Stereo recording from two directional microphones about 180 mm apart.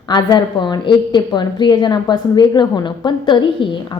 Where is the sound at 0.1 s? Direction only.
25° left (ahead or behind).